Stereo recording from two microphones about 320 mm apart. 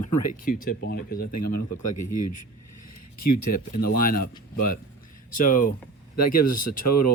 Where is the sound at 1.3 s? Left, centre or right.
Left.